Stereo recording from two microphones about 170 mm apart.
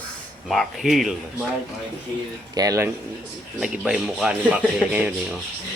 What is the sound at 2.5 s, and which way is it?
Speech, 20° right (ahead or behind).